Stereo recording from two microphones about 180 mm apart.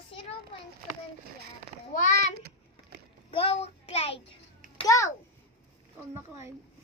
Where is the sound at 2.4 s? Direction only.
65° right (ahead or behind).